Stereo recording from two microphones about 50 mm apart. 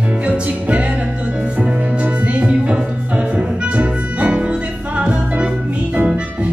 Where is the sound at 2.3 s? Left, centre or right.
Right.